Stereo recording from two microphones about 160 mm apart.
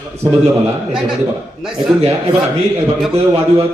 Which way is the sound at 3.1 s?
35° right (ahead or behind).